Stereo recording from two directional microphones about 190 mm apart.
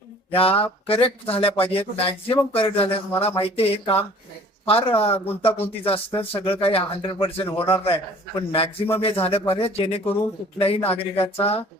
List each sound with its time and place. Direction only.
0.3 s a man's voice: 30° left (ahead or behind)